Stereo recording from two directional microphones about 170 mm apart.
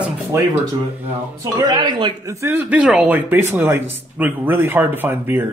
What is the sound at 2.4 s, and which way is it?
A man's voice, 10° right (ahead or behind).